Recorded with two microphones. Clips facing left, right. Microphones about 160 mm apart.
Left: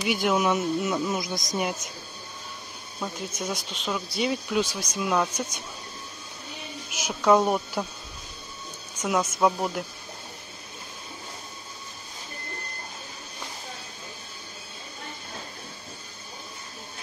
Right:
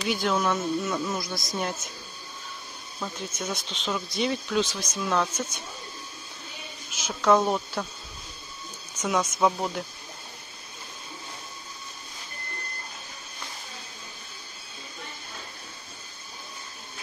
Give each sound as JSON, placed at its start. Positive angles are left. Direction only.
{"t": 0.0, "sound": "speech", "side_deg": 10}
{"t": 3.0, "sound": "speech", "side_deg": 10}
{"t": 6.9, "sound": "speech", "side_deg": 10}
{"t": 9.0, "sound": "speech", "side_deg": 5}